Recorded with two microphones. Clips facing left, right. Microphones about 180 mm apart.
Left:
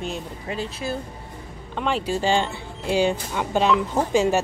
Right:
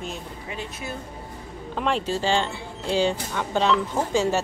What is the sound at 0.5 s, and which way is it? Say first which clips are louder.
Speech: left 6 dB; 35° left (ahead or behind).